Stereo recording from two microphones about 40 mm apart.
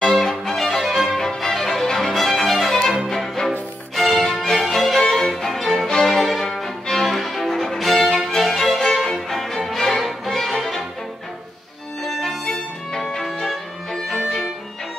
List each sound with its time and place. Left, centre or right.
0.0 s music: centre
0.8 s music: centre
1.1 s music: centre
2.0 s violin: centre
2.8 s music: centre
12.0 s music: centre
12.4 s violin: centre